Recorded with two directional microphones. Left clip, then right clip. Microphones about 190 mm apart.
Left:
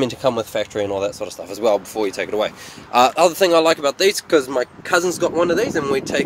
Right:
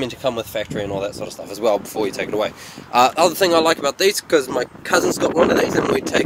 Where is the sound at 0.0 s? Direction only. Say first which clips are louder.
Left 3 dB; 25° left (ahead or behind).